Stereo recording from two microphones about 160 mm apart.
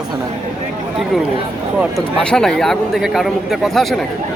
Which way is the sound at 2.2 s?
5° left (ahead or behind).